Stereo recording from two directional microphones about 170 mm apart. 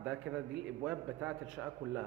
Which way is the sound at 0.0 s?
10° right (ahead or behind).